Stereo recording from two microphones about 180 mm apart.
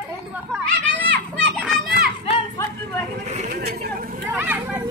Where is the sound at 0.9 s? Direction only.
5° left (ahead or behind).